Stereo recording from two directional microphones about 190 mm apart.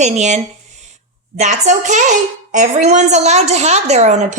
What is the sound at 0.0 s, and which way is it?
A woman's voice, 35° right (ahead or behind).